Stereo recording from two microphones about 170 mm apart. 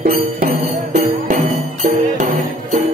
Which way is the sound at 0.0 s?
60° right (ahead or behind).